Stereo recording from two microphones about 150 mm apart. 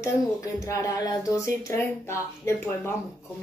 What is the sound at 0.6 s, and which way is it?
A woman's voice, 20° left (ahead or behind).